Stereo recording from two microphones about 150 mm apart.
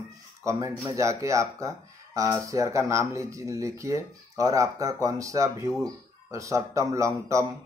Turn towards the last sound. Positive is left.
turn(degrees=-20)  # may be behind; listen again after turning